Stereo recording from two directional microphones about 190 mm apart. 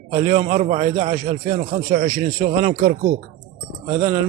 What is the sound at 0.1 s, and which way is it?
A man's voice, 35° right (ahead or behind).